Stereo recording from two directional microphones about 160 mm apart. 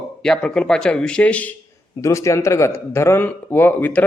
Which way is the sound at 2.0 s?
20° left (ahead or behind).